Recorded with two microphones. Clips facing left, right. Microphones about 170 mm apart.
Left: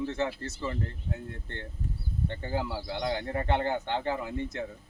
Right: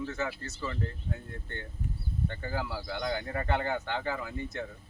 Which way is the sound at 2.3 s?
30° left (ahead or behind).